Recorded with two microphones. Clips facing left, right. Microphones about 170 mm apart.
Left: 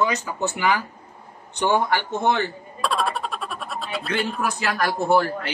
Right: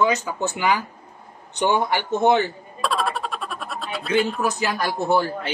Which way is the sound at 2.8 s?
Centre (ahead or behind).